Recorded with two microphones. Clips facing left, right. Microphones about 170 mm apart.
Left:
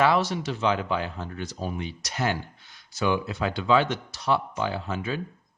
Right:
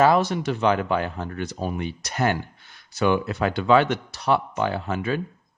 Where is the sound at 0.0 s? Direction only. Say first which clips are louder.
Right 4 dB; 50° right (ahead or behind).